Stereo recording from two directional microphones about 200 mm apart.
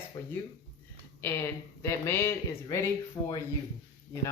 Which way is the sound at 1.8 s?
15° left (ahead or behind).